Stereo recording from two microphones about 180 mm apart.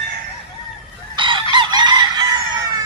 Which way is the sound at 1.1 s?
25° right (ahead or behind).